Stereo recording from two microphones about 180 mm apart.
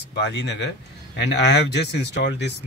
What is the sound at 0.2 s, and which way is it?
Speech, 75° left (ahead or behind).